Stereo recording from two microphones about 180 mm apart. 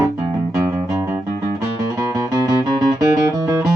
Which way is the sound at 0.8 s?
15° right (ahead or behind).